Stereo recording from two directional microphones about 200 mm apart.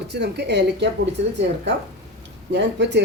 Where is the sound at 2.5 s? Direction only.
60° right (ahead or behind).